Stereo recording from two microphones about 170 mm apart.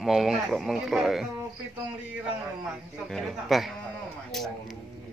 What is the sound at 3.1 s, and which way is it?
A man's voice, centre (ahead or behind).